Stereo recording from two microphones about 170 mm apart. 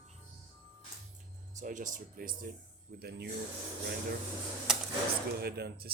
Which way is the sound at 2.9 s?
70° right (ahead or behind).